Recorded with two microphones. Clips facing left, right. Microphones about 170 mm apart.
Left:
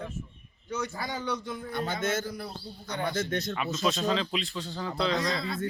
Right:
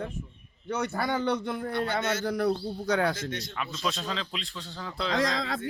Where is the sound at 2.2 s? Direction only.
70° right (ahead or behind).